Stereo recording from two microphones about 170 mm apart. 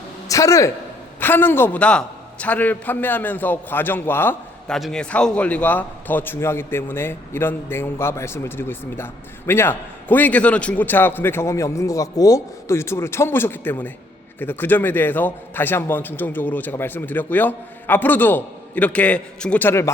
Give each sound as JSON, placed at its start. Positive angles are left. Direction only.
{"t": 0.3, "sound": "a man's voice", "side_deg": 20}